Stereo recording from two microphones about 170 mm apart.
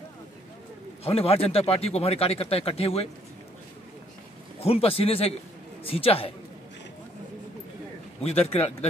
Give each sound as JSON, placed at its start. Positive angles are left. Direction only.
{"t": 1.0, "sound": "speech", "side_deg": 35}
{"t": 4.6, "sound": "speech", "side_deg": 35}
{"t": 8.5, "sound": "speech", "side_deg": 40}